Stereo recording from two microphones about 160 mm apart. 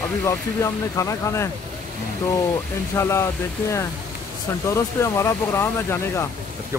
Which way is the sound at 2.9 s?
15° left (ahead or behind).